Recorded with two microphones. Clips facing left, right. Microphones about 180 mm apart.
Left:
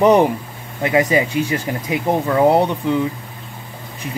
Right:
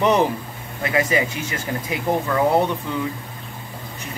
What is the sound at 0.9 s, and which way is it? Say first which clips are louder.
Speech: left 5 dB; 20° left (ahead or behind).